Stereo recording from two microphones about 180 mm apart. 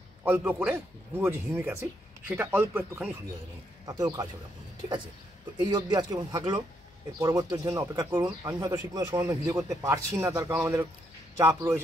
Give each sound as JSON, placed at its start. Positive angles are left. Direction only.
{"t": 0.2, "sound": "speech", "side_deg": -10}
{"t": 3.8, "sound": "speech", "side_deg": -20}
{"t": 5.8, "sound": "speech", "side_deg": -20}